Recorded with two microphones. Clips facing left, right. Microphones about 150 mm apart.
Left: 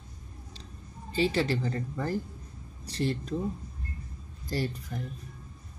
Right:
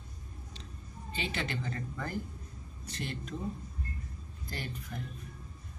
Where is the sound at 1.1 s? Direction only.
35° left (ahead or behind).